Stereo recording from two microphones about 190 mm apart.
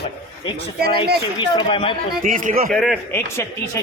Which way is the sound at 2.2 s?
45° right (ahead or behind).